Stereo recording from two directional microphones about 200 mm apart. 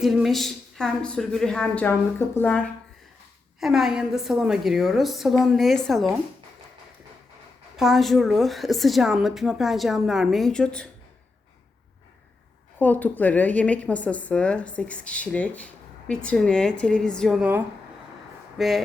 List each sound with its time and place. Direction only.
0.0 s speech: centre (ahead or behind)
7.8 s speech: centre (ahead or behind)
12.8 s speech: 10° left (ahead or behind)